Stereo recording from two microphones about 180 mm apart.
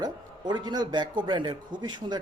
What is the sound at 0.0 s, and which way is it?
A man's voice, 25° right (ahead or behind).